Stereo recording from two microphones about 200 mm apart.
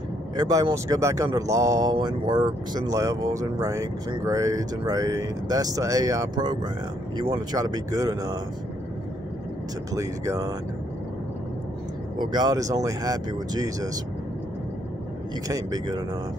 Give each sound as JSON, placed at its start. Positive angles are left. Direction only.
{"t": 0.4, "sound": "speech", "side_deg": -20}
{"t": 9.9, "sound": "speech", "side_deg": -15}
{"t": 12.2, "sound": "speech", "side_deg": -20}
{"t": 15.4, "sound": "speech", "side_deg": -20}